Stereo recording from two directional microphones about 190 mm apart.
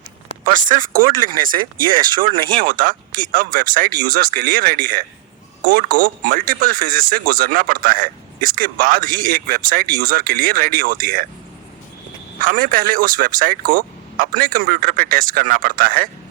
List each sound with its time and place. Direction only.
0.5 s speech: 45° right (ahead or behind)
1.5 s speech: 25° right (ahead or behind)
2.6 s speech: 45° right (ahead or behind)
12.4 s speech: 45° right (ahead or behind)